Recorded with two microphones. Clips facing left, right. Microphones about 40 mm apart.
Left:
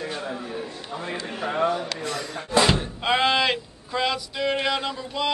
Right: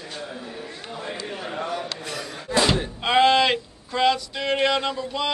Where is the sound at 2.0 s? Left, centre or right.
Centre.